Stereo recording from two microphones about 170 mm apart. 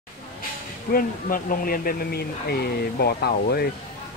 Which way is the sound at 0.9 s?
55° left (ahead or behind).